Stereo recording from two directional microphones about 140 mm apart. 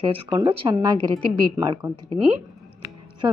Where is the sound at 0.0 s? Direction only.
40° right (ahead or behind).